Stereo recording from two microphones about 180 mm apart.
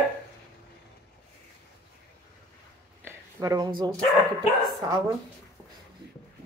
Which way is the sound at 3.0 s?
20° right (ahead or behind).